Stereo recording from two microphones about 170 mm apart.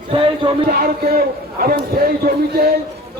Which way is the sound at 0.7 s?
60° right (ahead or behind).